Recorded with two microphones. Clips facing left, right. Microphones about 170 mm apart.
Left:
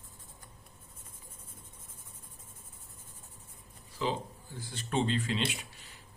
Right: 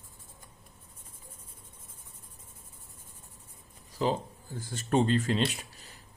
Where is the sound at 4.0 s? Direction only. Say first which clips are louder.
Right 4 dB; 40° right (ahead or behind).